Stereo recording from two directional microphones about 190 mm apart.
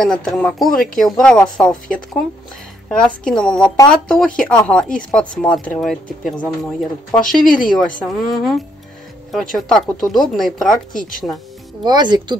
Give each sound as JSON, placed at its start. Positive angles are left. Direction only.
{"t": 0.0, "sound": "speech", "side_deg": 0}
{"t": 7.4, "sound": "speech", "side_deg": 45}
{"t": 7.7, "sound": "speech", "side_deg": 0}
{"t": 11.0, "sound": "speech", "side_deg": 45}
{"t": 11.8, "sound": "speech", "side_deg": -25}